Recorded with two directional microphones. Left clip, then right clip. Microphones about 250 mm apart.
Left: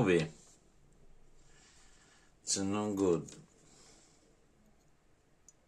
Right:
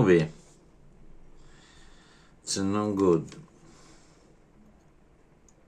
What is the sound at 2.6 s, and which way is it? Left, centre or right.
Speech, centre.